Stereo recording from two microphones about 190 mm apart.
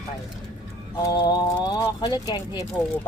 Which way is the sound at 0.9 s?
20° left (ahead or behind).